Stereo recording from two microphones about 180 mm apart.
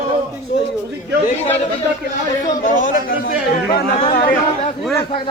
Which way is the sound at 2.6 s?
45° left (ahead or behind).